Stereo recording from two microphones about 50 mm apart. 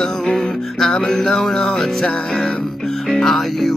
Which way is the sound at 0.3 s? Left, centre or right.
Centre.